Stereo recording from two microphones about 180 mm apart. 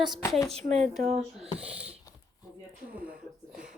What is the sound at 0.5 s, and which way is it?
Speech, 35° right (ahead or behind).